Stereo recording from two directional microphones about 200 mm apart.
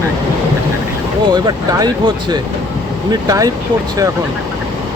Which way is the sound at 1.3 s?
20° right (ahead or behind).